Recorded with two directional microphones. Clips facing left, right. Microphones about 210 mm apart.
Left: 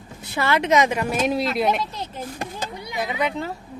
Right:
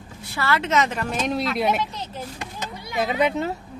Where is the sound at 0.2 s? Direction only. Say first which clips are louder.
Left 2 dB; 20° left (ahead or behind); by 1.8 s centre (ahead or behind).